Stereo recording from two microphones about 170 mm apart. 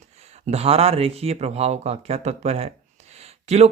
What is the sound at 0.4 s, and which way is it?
A man's voice, 35° right (ahead or behind).